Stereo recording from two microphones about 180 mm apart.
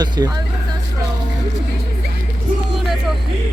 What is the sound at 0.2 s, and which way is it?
Speech, 20° right (ahead or behind).